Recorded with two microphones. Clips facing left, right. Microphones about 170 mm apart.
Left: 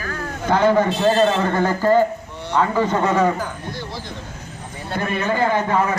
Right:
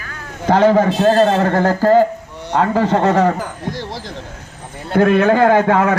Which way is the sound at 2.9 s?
75° right (ahead or behind).